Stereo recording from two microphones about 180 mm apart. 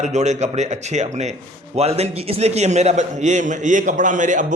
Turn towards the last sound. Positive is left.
turn(degrees=-45)  # may be behind; listen again after turning